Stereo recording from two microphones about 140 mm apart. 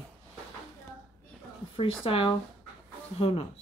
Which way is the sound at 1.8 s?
40° left (ahead or behind).